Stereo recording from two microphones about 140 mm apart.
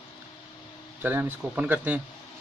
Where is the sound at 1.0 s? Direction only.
15° right (ahead or behind).